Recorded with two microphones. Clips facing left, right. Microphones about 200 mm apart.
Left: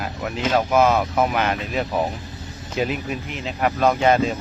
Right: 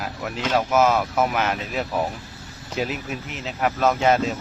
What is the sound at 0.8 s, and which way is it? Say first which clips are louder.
Speech: left 1 dB; 5° right (ahead or behind).